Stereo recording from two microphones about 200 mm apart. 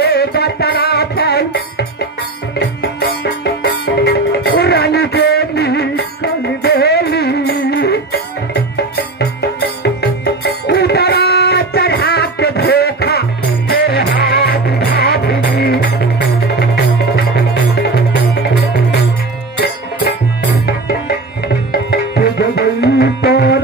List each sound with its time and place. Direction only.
0.0 s music: 55° left (ahead or behind)
22.6 s music: 55° left (ahead or behind)